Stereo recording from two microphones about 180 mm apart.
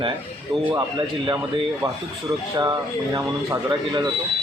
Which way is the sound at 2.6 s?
20° right (ahead or behind).